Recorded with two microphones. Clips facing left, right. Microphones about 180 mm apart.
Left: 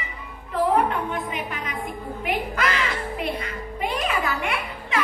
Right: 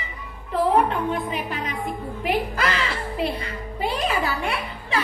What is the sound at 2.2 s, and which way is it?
Music, 35° right (ahead or behind).